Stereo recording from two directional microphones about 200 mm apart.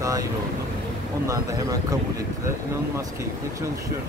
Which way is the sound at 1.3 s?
15° right (ahead or behind).